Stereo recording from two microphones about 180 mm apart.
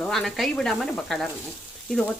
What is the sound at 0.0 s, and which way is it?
Speech, centre (ahead or behind).